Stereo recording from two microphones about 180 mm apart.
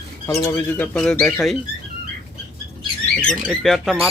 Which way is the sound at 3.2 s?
Centre (ahead or behind).